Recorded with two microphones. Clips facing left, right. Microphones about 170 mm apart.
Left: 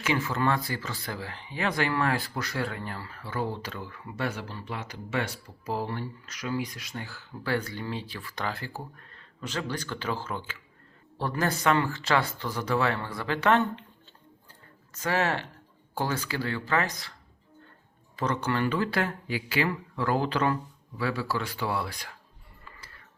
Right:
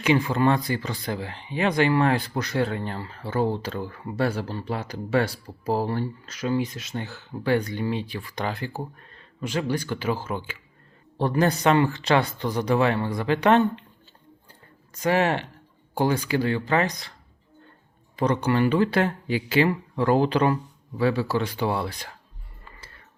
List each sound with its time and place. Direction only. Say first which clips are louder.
0.0 s speech: right 6 dB; 20° right (ahead or behind)
14.9 s speech: right 5 dB; 15° right (ahead or behind)
18.2 s speech: right 6 dB; 15° right (ahead or behind)